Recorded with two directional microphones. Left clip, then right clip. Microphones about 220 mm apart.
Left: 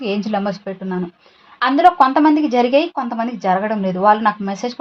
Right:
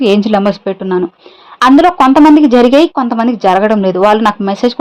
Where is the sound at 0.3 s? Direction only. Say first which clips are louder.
Right 10 dB; 50° right (ahead or behind).